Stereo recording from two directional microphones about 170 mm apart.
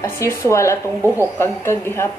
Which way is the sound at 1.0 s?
15° right (ahead or behind).